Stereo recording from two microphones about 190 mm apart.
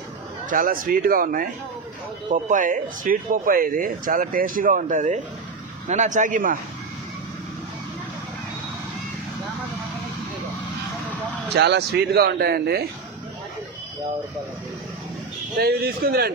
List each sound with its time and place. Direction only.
0.5 s speech: 45° right (ahead or behind)
11.5 s speech: 60° right (ahead or behind)
15.5 s speech: 55° right (ahead or behind)